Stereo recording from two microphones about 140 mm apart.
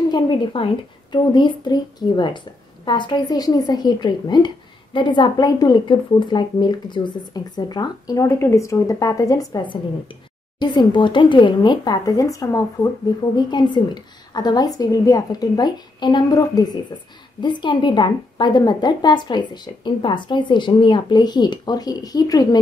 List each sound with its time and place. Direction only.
0.1 s a woman's voice: 35° left (ahead or behind)